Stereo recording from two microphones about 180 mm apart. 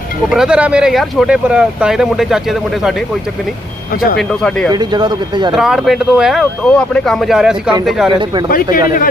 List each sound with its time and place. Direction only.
0.3 s speech: 5° right (ahead or behind)
4.2 s speech: 5° left (ahead or behind)
4.7 s speech: 25° right (ahead or behind)
5.5 s speech: centre (ahead or behind)
8.4 s speech: 50° left (ahead or behind)